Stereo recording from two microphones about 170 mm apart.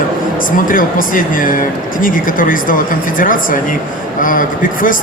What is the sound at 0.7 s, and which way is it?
Speech, 55° left (ahead or behind).